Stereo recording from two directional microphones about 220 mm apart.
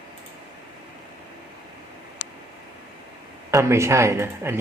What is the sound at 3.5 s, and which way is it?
Speech, 10° right (ahead or behind).